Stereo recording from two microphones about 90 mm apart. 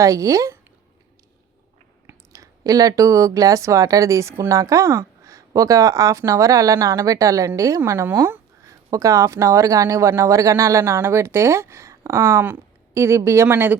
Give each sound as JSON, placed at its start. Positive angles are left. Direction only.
{"t": 0.0, "sound": "speech", "side_deg": -35}
{"t": 2.0, "sound": "speech", "side_deg": -40}
{"t": 7.8, "sound": "speech", "side_deg": -25}
{"t": 8.6, "sound": "speech", "side_deg": -40}